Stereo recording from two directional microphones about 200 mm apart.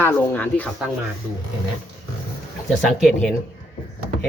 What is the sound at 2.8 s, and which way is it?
Speech, 5° left (ahead or behind).